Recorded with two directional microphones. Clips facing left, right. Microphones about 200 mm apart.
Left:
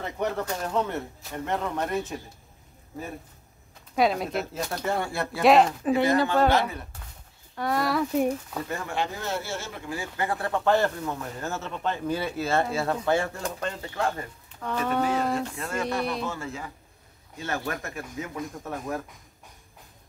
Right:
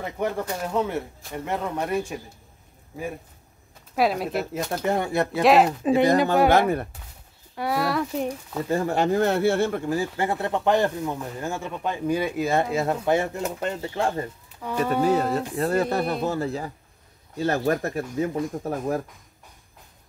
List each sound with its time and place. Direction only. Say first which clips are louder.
0.0 s speech: right 2 dB; 10° right (ahead or behind)
3.9 s speech: right 1 dB; centre (ahead or behind)
4.6 s speech: right 4 dB; 20° right (ahead or behind)
5.4 s speech: right 1 dB; centre (ahead or behind)
5.9 s speech: right 4 dB; 15° right (ahead or behind)
6.5 s speech: right 5 dB; 55° right (ahead or behind)
7.5 s speech: right 1 dB; 5° right (ahead or behind)
8.6 s speech: right 10 dB; 35° right (ahead or behind)
10.1 s speech: right 3 dB; 25° right (ahead or behind)
14.6 s speech: right 3 dB; 10° right (ahead or behind)
15.5 s speech: right 7 dB; 35° right (ahead or behind)